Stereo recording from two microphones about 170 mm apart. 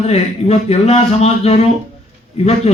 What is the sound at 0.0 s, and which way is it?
A man's voice, 35° left (ahead or behind).